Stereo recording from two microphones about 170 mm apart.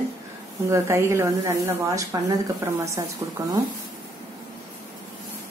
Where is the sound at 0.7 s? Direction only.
15° right (ahead or behind).